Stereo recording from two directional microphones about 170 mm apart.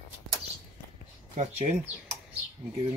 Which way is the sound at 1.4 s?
45° right (ahead or behind).